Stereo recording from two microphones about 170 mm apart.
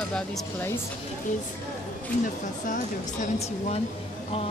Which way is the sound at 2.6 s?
50° left (ahead or behind).